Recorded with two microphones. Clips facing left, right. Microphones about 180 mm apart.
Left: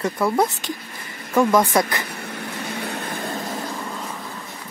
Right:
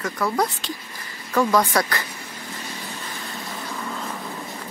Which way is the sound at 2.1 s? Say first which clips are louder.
Left 5 dB; 65° left (ahead or behind).